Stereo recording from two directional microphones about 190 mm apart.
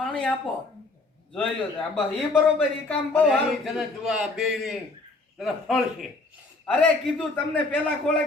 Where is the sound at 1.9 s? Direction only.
5° left (ahead or behind).